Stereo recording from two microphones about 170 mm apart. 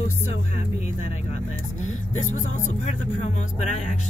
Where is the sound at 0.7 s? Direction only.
40° left (ahead or behind).